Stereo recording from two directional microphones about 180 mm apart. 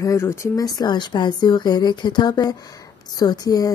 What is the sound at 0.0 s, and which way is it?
A woman's voice, 15° left (ahead or behind).